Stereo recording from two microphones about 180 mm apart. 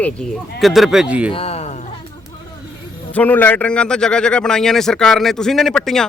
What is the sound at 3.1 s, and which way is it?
Speech, 10° left (ahead or behind).